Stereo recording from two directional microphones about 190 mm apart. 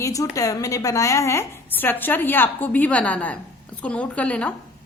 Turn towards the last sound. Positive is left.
turn(degrees=5)  # may be behind; listen again after turning